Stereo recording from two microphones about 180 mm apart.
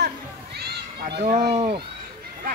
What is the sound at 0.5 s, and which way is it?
Children playing, 65° right (ahead or behind).